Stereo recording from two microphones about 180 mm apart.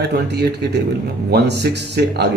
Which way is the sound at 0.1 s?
65° right (ahead or behind).